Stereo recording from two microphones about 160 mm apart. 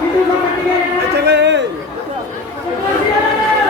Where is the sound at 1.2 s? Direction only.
90° right.